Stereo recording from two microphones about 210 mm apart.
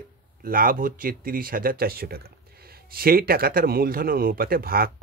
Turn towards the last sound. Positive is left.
turn(degrees=-45)  # may be behind; listen again after turning